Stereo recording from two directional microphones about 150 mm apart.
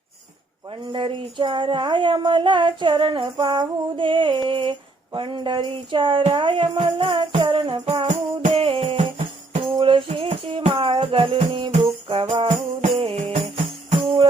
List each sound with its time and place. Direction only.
0.7 s speech: 35° right (ahead or behind)
8.0 s music: 55° right (ahead or behind)
8.5 s music: 35° right (ahead or behind)